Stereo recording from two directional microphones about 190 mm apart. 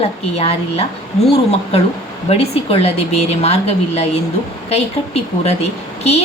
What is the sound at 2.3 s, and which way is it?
A woman's voice, 30° left (ahead or behind).